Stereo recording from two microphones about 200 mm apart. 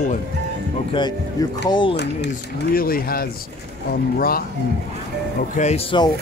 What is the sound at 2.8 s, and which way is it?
Speech, 45° left (ahead or behind).